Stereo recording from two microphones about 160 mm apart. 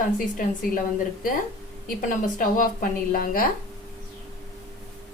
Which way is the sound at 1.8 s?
55° left (ahead or behind).